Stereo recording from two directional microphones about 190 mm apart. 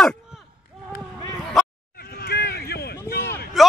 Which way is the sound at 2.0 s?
55° left (ahead or behind).